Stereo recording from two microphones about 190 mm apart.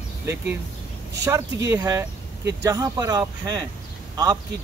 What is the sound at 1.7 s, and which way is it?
Speech, 20° right (ahead or behind).